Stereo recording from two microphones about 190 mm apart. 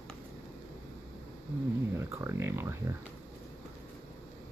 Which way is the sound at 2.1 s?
15° right (ahead or behind).